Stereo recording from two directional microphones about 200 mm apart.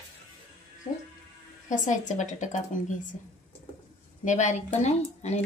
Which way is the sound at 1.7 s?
40° left (ahead or behind).